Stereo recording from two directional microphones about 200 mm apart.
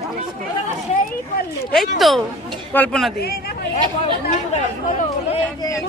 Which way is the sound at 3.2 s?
50° left (ahead or behind).